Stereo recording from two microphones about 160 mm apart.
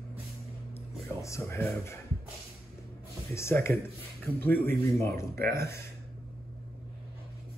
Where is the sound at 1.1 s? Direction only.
15° left (ahead or behind).